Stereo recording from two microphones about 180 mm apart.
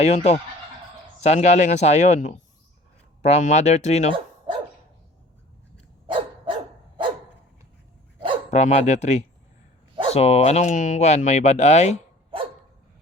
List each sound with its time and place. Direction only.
0.0 s speech: 35° left (ahead or behind)
6.1 s dog: 30° right (ahead or behind)
8.4 s speech: 40° left (ahead or behind)